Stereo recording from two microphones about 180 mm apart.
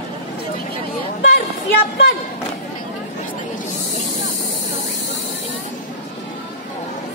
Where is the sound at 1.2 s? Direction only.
60° left (ahead or behind).